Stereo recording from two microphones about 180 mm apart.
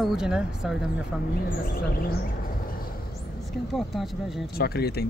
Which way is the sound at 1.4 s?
55° left (ahead or behind).